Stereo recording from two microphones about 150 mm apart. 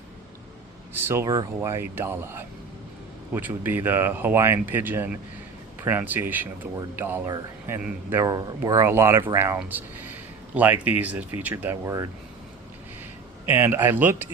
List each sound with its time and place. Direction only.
1.0 s speech: 20° right (ahead or behind)
8.2 s speech: 25° right (ahead or behind)
13.5 s speech: 15° right (ahead or behind)